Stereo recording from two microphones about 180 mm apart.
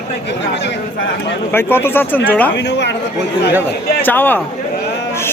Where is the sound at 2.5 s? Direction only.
75° left (ahead or behind).